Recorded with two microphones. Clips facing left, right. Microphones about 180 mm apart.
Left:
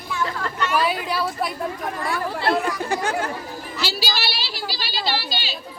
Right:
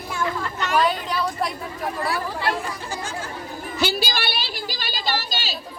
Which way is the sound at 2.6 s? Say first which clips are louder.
Left 7 dB; 65° left (ahead or behind).